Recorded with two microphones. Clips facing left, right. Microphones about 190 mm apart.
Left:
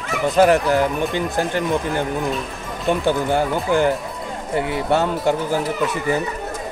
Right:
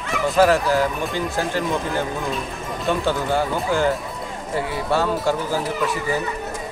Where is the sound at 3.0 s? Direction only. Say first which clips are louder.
Left 3 dB; 20° left (ahead or behind).